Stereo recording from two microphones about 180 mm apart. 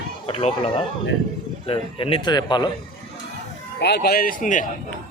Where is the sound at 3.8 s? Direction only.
65° left (ahead or behind); by 4.6 s 45° left (ahead or behind).